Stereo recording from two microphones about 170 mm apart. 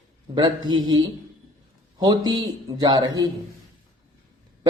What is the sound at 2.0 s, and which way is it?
A man's voice, 25° right (ahead or behind).